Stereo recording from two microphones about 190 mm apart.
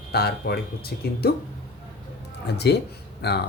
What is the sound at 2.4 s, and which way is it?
Speech, 60° left (ahead or behind).